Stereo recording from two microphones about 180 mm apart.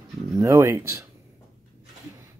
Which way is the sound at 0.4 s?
15° right (ahead or behind).